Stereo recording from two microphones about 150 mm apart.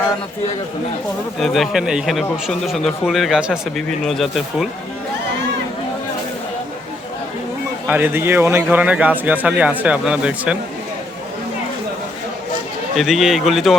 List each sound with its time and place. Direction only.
1.4 s speech: centre (ahead or behind)
7.9 s a man's voice: 10° right (ahead or behind)
13.0 s speech: centre (ahead or behind)